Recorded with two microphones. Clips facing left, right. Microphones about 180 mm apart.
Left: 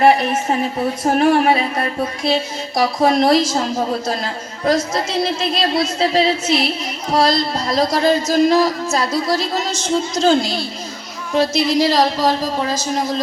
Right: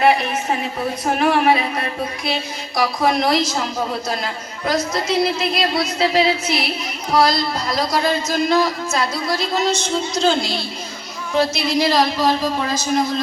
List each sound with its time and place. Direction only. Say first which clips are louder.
1.2 s a woman's voice: left 1 dB; 40° left (ahead or behind)
2.2 s a woman's voice: left 5 dB; 30° left (ahead or behind)
8.0 s a woman's voice: left 5 dB; 40° left (ahead or behind)